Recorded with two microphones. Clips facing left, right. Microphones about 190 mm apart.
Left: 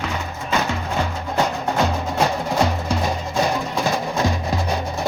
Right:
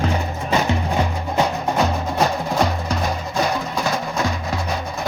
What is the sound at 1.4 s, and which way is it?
Music, 5° right (ahead or behind).